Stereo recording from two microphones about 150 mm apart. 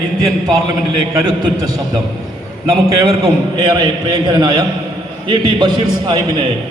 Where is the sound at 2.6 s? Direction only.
25° right (ahead or behind).